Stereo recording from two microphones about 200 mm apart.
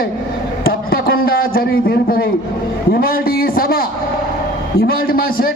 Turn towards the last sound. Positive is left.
turn(degrees=45)  # may be behind; listen again after turning